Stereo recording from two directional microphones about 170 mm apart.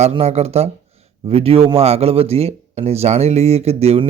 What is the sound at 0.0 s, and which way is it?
Speech, 40° right (ahead or behind).